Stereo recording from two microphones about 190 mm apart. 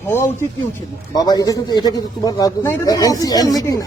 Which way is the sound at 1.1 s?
20° left (ahead or behind).